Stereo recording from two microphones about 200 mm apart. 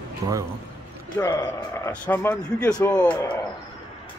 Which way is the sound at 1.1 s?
15° left (ahead or behind).